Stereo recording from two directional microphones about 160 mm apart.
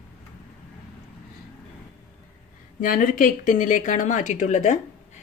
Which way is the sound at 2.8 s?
60° left (ahead or behind).